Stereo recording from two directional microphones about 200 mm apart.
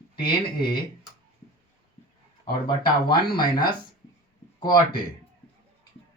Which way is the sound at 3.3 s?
20° left (ahead or behind).